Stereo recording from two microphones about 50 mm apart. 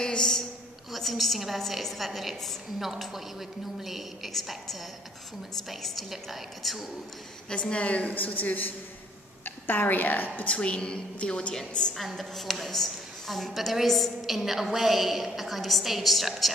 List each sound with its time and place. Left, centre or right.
0.0 s a sound: centre
0.9 s a woman's voice: centre
7.4 s a woman's voice: centre; by 10.5 s left
10.5 s a woman's voice: left
12.0 s a woman's voice: centre